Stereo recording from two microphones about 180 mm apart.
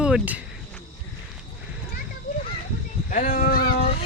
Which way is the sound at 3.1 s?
50° left (ahead or behind).